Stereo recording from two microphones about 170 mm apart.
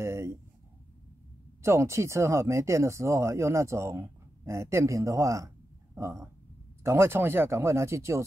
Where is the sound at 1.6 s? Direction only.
15° right (ahead or behind).